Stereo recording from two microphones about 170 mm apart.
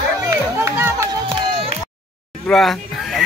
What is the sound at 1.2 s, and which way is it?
Run, 35° right (ahead or behind).